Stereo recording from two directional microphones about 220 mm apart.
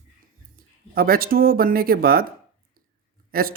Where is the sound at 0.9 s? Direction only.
40° right (ahead or behind).